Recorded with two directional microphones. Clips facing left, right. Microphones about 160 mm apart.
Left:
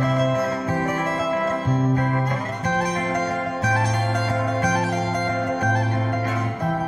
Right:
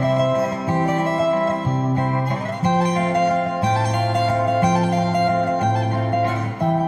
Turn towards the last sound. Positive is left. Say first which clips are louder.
# right 3 dB
turn(degrees=-25)  # may be behind; listen again after turning